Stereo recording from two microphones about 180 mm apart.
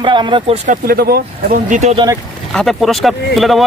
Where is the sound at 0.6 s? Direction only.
55° right (ahead or behind).